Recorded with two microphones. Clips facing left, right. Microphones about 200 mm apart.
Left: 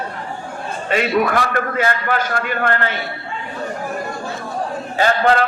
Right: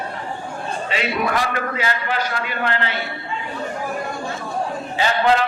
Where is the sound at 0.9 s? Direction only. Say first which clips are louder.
Left 6 dB; 50° left (ahead or behind).